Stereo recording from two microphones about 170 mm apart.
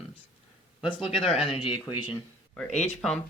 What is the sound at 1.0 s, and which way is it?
Speech, 35° left (ahead or behind).